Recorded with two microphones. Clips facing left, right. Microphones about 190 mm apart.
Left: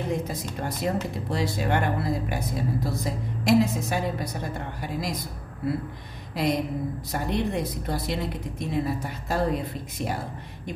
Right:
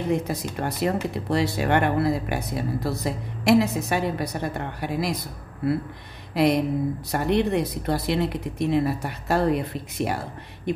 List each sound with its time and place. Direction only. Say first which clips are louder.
0.3 s speech: right 3 dB; 65° right (ahead or behind)
6.3 s speech: right 5 dB; 65° right (ahead or behind)